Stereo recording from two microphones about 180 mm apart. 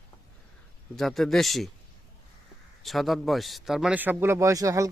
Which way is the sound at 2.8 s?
Centre (ahead or behind).